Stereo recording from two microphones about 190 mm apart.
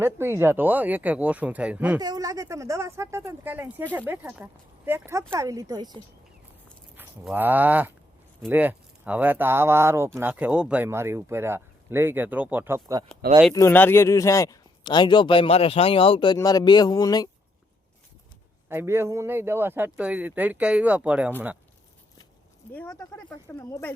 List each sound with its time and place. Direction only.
0.0 s speech: 10° right (ahead or behind)
2.0 s speech: 20° right (ahead or behind)
6.9 s speech: 10° right (ahead or behind)
13.5 s a man's voice: 15° left (ahead or behind)
18.7 s speech: 10° right (ahead or behind)
22.6 s speech: 10° left (ahead or behind)